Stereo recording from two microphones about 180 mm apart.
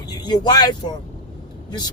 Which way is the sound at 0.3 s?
20° left (ahead or behind).